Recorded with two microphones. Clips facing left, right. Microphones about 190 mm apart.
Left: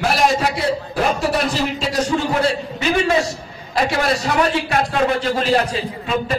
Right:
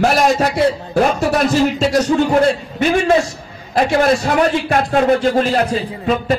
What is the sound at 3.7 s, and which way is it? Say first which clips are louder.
A man's voice: right 5 dB; 50° right (ahead or behind).